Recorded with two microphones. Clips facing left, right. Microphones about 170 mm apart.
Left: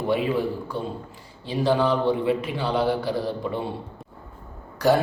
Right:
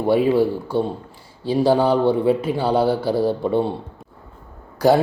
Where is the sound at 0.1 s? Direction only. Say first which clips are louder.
Right 8 dB; 35° right (ahead or behind).